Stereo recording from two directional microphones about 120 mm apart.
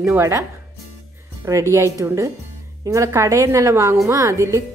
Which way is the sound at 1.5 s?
25° right (ahead or behind).